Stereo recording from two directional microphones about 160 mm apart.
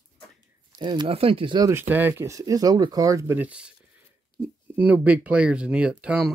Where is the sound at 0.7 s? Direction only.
30° right (ahead or behind).